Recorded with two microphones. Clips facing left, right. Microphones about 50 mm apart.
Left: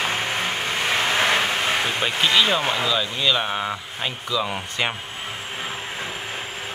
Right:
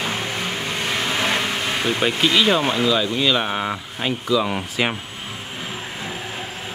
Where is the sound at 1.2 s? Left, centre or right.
Left.